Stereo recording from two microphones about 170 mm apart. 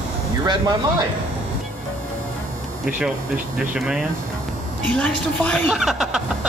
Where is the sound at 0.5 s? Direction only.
25° right (ahead or behind).